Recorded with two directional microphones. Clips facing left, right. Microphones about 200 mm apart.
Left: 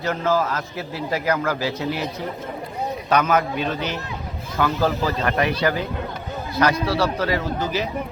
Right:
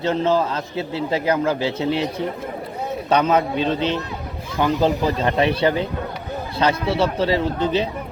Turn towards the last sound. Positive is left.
turn(degrees=-30)  # may be behind; listen again after turning